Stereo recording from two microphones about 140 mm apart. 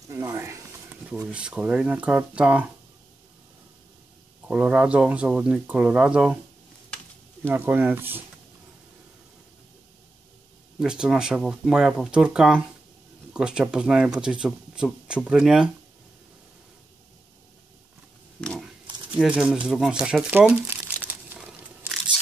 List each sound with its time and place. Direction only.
0.1 s speech: 20° right (ahead or behind)
1.3 s speech: 10° right (ahead or behind)
4.5 s speech: 10° right (ahead or behind)
7.4 s speech: 15° right (ahead or behind)
10.8 s speech: 5° right (ahead or behind)
18.4 s a sound: 5° left (ahead or behind)
19.1 s crumpling: 5° right (ahead or behind)